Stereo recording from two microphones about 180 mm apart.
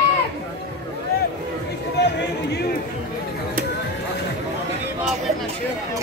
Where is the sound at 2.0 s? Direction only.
70° left (ahead or behind).